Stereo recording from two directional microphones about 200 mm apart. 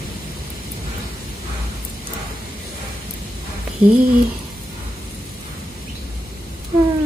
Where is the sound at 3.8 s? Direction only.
10° right (ahead or behind).